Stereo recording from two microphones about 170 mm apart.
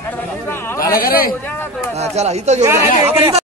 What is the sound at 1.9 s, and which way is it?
Speech, 40° right (ahead or behind).